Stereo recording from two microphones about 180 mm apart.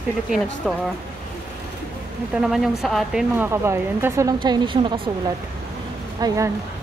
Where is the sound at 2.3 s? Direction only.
Centre (ahead or behind).